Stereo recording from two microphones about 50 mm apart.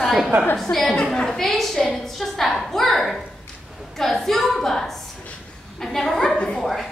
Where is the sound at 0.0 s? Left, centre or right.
Centre.